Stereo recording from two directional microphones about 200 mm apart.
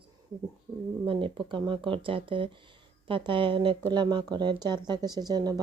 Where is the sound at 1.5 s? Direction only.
25° right (ahead or behind).